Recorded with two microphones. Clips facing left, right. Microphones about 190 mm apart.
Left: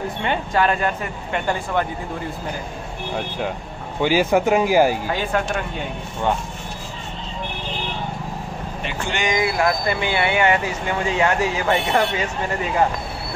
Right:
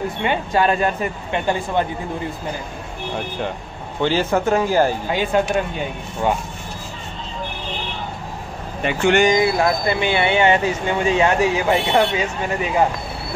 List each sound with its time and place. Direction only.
0.2 s speech: 15° right (ahead or behind)
3.2 s speech: 5° left (ahead or behind)
5.0 s speech: 20° right (ahead or behind)
8.8 s speech: 55° right (ahead or behind)
9.3 s speech: 30° right (ahead or behind)